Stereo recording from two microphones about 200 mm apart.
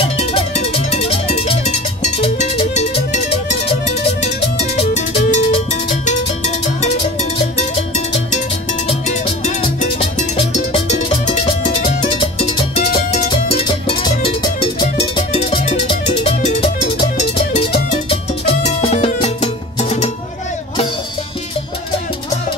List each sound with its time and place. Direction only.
0.2 s music: 30° left (ahead or behind)
9.4 s music: 35° left (ahead or behind)